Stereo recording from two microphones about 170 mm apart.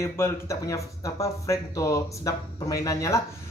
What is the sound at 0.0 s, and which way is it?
Speech, 15° left (ahead or behind).